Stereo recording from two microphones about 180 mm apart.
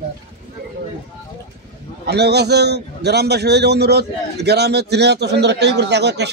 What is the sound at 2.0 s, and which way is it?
A man's voice, 65° right (ahead or behind).